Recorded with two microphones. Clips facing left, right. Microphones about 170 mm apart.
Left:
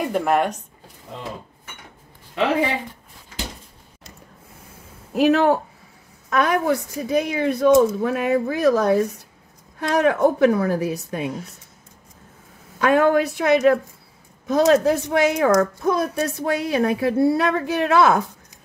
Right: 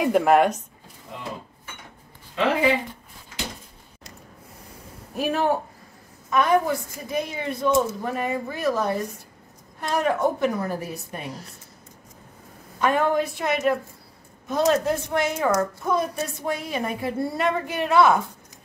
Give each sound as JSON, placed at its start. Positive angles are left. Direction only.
{"t": 0.0, "sound": "speech", "side_deg": -5}
{"t": 5.1, "sound": "speech", "side_deg": 85}
{"t": 12.8, "sound": "a woman's voice", "side_deg": 90}